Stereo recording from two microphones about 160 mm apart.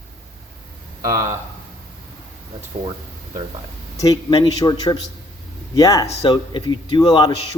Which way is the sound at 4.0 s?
25° left (ahead or behind).